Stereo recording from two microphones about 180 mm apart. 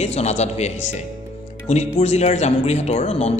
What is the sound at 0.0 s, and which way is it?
Speech, 40° left (ahead or behind).